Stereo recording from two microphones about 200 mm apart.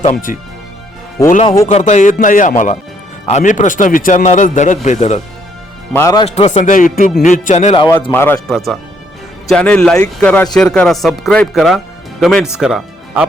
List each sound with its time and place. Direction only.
0.0 s speech: 40° left (ahead or behind)
1.6 s speech: 35° left (ahead or behind)
5.9 s a man's voice: 15° left (ahead or behind)
6.2 s speech: 30° left (ahead or behind)
7.8 s a man's voice: 15° left (ahead or behind); by 13.2 s 5° right (ahead or behind)